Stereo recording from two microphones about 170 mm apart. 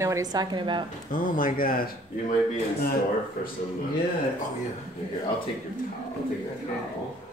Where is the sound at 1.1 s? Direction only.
55° left (ahead or behind).